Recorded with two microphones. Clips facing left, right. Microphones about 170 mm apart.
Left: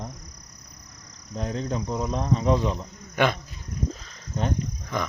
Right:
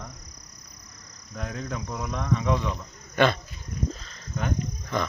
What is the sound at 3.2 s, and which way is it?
Speech, 10° left (ahead or behind).